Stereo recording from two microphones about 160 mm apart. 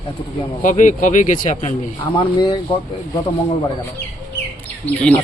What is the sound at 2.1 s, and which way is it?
Speech, 25° left (ahead or behind).